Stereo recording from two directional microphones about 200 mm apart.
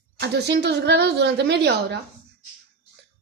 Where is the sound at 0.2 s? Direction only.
55° right (ahead or behind).